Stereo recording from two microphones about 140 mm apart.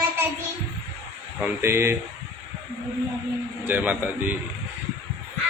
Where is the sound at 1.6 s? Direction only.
15° right (ahead or behind).